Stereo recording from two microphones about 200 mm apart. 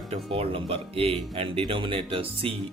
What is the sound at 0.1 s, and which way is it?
Speech, 30° right (ahead or behind).